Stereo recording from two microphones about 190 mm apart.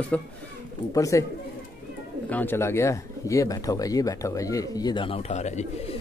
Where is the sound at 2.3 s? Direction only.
10° left (ahead or behind); by 5.9 s 35° left (ahead or behind).